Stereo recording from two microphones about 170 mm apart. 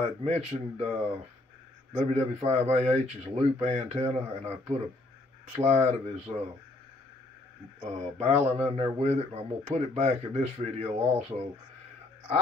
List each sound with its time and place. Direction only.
0.2 s speech: 40° right (ahead or behind)
2.0 s speech: 35° right (ahead or behind)
7.8 s speech: 40° right (ahead or behind)